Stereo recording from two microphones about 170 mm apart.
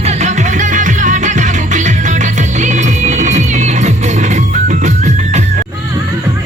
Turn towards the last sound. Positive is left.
turn(degrees=-45)  # may be behind; listen again after turning